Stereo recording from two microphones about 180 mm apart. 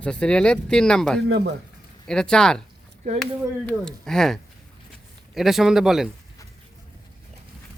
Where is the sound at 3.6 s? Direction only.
5° left (ahead or behind).